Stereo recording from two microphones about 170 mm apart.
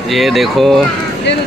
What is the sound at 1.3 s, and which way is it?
Speech, 90° left.